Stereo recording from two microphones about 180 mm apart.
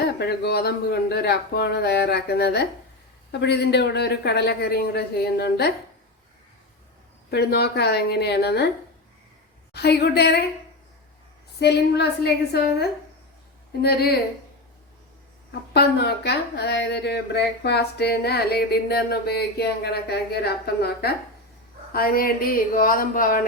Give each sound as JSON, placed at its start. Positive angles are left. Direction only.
{"t": 0.0, "sound": "speech", "side_deg": 65}
{"t": 7.3, "sound": "speech", "side_deg": 65}
{"t": 9.7, "sound": "speech", "side_deg": 65}
{"t": 11.6, "sound": "speech", "side_deg": 65}
{"t": 15.7, "sound": "speech", "side_deg": 65}